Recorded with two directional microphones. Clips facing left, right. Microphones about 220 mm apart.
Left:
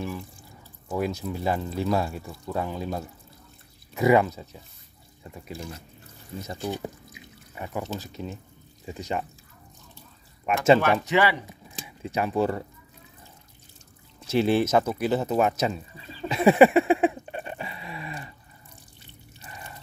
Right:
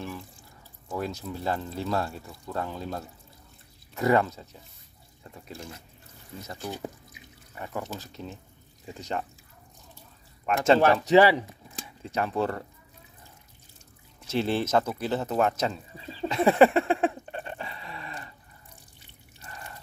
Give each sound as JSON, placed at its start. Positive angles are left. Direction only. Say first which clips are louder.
{"t": 0.8, "sound": "speech", "louder": "left 4 dB", "side_deg": 15}
{"t": 6.4, "sound": "speech", "louder": "left 4 dB", "side_deg": 15}
{"t": 10.4, "sound": "speech", "louder": "left 2 dB", "side_deg": 10}
{"t": 10.8, "sound": "speech", "louder": "right 4 dB", "side_deg": -35}
{"t": 12.0, "sound": "speech", "louder": "left 3 dB", "side_deg": 10}
{"t": 14.2, "sound": "speech", "louder": "left 5 dB", "side_deg": 10}
{"t": 16.3, "sound": "a sound", "louder": "left 3 dB", "side_deg": 10}
{"t": 19.4, "sound": "drip", "louder": "even", "side_deg": 5}